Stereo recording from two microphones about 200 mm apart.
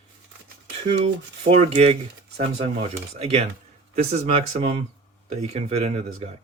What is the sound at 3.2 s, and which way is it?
Speech, 30° right (ahead or behind).